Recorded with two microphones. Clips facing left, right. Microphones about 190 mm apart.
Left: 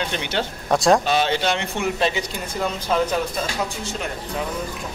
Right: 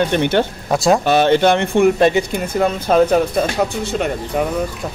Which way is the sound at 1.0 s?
55° right (ahead or behind).